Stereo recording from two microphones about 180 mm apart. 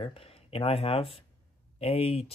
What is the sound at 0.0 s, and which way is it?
Speech, 30° left (ahead or behind).